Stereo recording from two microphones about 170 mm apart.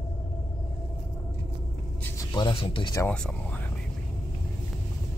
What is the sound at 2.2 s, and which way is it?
Speech, 25° left (ahead or behind).